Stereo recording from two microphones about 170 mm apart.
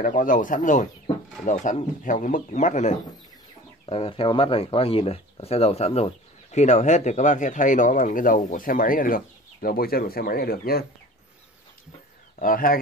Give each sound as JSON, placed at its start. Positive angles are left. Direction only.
{"t": 0.0, "sound": "speech", "side_deg": 50}
{"t": 3.8, "sound": "speech", "side_deg": 35}
{"t": 12.4, "sound": "speech", "side_deg": 55}